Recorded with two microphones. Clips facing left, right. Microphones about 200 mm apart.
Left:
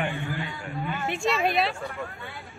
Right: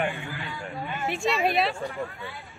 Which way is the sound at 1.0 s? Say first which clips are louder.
Right 1 dB; centre (ahead or behind).